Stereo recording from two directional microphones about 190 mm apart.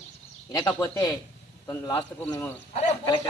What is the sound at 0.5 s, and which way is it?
Speech, 15° left (ahead or behind).